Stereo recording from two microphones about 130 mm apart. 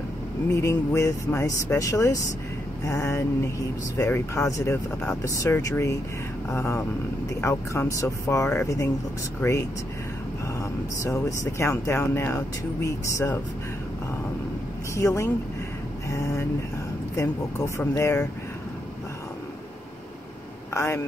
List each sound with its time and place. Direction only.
0.5 s speech: 20° left (ahead or behind)
10.6 s speech: 25° left (ahead or behind)
15.0 s speech: 20° left (ahead or behind)
16.1 s vehicle: 25° left (ahead or behind)
17.1 s speech: 25° left (ahead or behind)
20.7 s speech: 20° left (ahead or behind)